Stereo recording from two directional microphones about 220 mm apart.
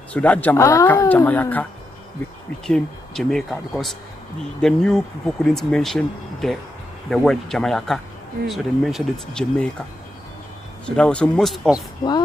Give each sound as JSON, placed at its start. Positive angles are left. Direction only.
{"t": 0.1, "sound": "speech", "side_deg": 5}
{"t": 10.9, "sound": "speech", "side_deg": 5}
{"t": 11.7, "sound": "speech", "side_deg": 20}